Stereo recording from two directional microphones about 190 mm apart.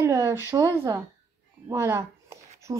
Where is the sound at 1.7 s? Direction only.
15° right (ahead or behind).